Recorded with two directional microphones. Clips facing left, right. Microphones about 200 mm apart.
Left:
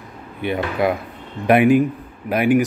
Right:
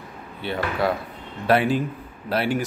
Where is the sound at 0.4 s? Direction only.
20° left (ahead or behind).